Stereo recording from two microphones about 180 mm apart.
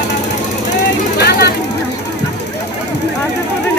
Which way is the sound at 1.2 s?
65° left (ahead or behind).